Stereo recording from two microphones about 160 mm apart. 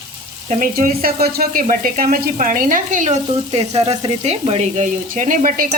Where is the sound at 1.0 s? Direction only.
70° right (ahead or behind).